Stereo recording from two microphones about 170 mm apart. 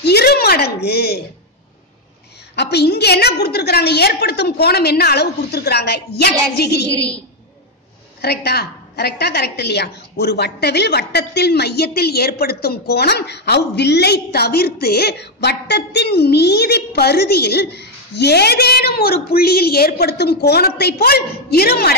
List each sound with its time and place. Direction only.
0.0 s a sound: 70° left (ahead or behind)
2.5 s a woman's voice: 75° left (ahead or behind)
8.2 s a woman's voice: 70° left (ahead or behind)